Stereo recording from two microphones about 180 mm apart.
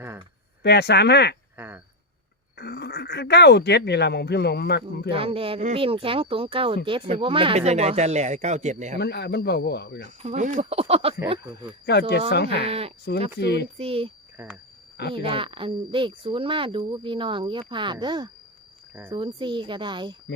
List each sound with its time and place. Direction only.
0.6 s speech: 70° left (ahead or behind)
1.5 s a sound: 10° right (ahead or behind)
2.6 s speech: 65° left (ahead or behind)
5.1 s speech: 30° right (ahead or behind)
9.0 s speech: 65° left (ahead or behind)
10.2 s speech: 45° right (ahead or behind)
11.9 s speech: 65° left (ahead or behind)
12.5 s speech: 35° right (ahead or behind)
13.4 s speech: 65° left (ahead or behind)
13.7 s speech: 30° right (ahead or behind)
15.1 s speech: 30° right (ahead or behind)